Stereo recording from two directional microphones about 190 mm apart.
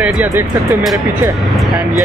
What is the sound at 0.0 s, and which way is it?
Speech, 10° right (ahead or behind).